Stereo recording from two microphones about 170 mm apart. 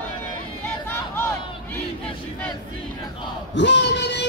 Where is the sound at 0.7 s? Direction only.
15° left (ahead or behind).